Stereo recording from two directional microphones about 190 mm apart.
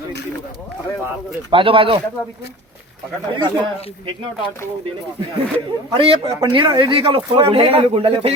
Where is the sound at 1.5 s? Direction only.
25° right (ahead or behind).